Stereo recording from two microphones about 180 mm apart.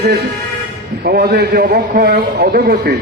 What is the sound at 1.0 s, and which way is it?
A man's voice, 60° right (ahead or behind).